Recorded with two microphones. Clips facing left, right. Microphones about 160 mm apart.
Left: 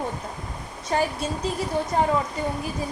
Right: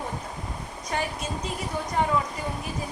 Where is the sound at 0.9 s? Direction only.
30° left (ahead or behind).